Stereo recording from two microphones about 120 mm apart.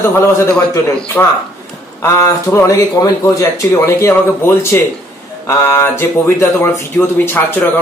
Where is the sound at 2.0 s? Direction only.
25° left (ahead or behind).